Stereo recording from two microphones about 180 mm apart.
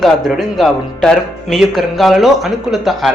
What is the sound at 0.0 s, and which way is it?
Speech, centre (ahead or behind).